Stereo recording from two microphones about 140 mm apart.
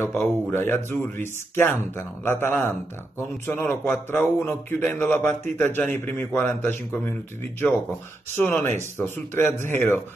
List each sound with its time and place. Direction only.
0.0 s speech: 15° left (ahead or behind)
8.4 s speech: 15° left (ahead or behind)